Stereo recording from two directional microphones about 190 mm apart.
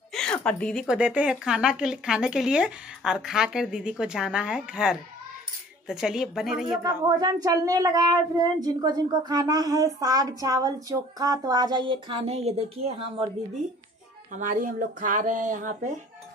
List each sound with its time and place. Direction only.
0.1 s a woman's voice: 5° left (ahead or behind)
6.8 s speech: 20° right (ahead or behind)
14.3 s speech: 45° right (ahead or behind)